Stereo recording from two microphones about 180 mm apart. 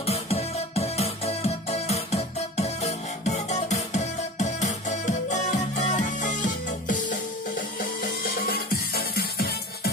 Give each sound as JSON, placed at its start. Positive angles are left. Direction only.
{"t": 0.0, "sound": "music", "side_deg": 35}